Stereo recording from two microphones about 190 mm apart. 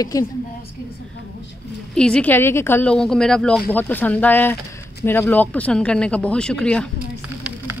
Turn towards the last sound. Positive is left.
turn(degrees=5)  # may be behind; listen again after turning